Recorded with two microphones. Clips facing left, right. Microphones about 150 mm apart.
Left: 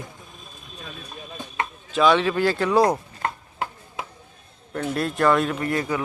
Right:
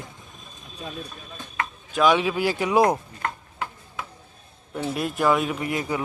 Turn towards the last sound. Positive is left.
turn(degrees=-15)  # may be behind; listen again after turning